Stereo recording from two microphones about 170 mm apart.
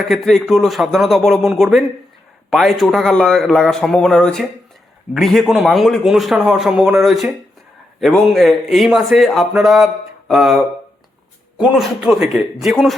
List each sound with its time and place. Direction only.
0.0 s speech: centre (ahead or behind)